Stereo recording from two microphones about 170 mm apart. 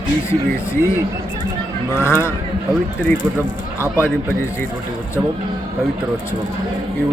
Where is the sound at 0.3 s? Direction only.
15° left (ahead or behind).